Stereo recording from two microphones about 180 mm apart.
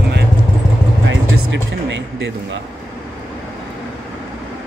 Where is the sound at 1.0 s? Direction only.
85° right.